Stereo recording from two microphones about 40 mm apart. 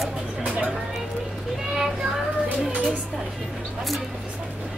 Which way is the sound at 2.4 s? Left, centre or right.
Right.